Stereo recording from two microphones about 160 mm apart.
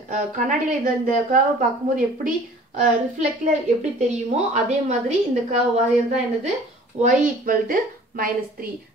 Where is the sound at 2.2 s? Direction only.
55° right (ahead or behind).